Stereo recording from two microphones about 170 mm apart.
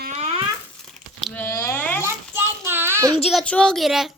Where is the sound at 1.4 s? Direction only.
15° left (ahead or behind).